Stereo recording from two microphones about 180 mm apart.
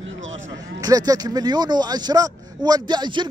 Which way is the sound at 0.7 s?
20° right (ahead or behind).